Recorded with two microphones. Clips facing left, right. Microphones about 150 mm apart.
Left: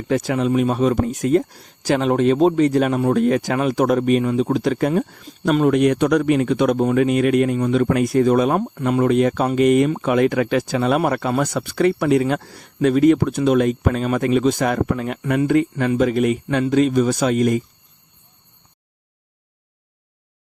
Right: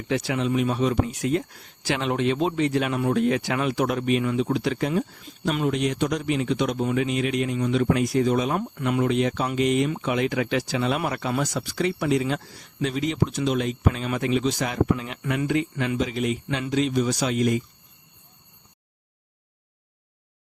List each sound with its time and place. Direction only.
0.1 s speech: 45° left (ahead or behind)
5.6 s speech: 55° left (ahead or behind)
15.2 s speech: 35° left (ahead or behind)
15.4 s speech: 50° left (ahead or behind)
15.7 s speech: 35° left (ahead or behind)
16.0 s speech: 55° left (ahead or behind)